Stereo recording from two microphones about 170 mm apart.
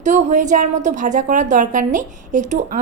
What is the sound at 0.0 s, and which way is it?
A woman's voice, 45° right (ahead or behind).